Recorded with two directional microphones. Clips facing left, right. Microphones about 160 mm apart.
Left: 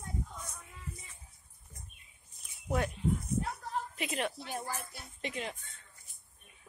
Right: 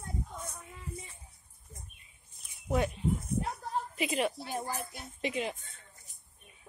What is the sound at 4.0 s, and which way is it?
A woman's voice, 5° right (ahead or behind).